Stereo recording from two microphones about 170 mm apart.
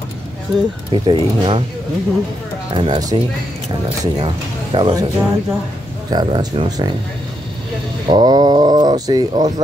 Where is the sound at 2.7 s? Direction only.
30° right (ahead or behind).